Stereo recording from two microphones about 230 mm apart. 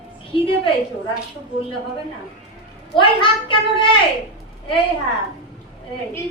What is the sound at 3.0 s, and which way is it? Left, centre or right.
Speech, left.